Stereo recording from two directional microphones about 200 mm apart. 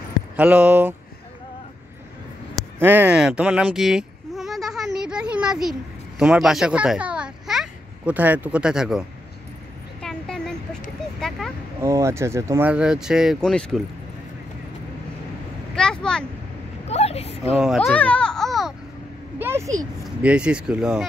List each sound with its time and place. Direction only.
0.4 s speech: 10° right (ahead or behind)
2.8 s a sound: 10° right (ahead or behind)
10.0 s a sound: 5° left (ahead or behind)
11.8 s speech: 15° right (ahead or behind); by 13.8 s 5° left (ahead or behind)
15.7 s vehicle: 5° left (ahead or behind)
16.8 s a sound: 30° left (ahead or behind)
17.6 s speech: centre (ahead or behind)
19.4 s speech: 15° right (ahead or behind)
20.2 s speech: 5° right (ahead or behind)